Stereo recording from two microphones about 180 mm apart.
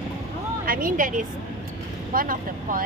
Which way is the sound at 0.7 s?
50° right (ahead or behind).